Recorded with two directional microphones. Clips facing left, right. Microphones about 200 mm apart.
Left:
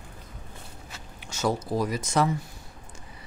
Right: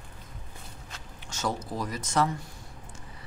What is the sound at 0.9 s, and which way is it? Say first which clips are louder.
Speech: left 1 dB; 10° left (ahead or behind).